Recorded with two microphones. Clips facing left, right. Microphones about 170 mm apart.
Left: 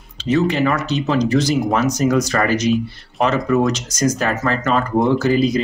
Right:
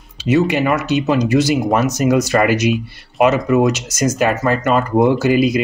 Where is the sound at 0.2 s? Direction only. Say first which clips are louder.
Right 2 dB; 10° right (ahead or behind).